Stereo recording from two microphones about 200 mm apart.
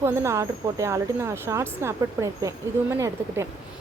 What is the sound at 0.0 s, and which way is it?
Speech, 15° right (ahead or behind).